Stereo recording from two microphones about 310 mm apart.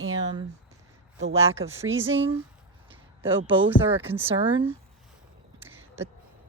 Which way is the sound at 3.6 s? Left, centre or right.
Centre.